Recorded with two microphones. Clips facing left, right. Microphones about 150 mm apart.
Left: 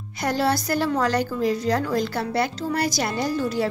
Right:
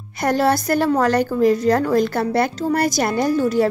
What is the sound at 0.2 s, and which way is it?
A woman's voice, 50° right (ahead or behind).